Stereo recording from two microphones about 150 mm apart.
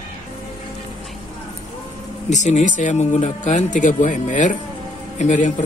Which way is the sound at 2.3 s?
55° left (ahead or behind).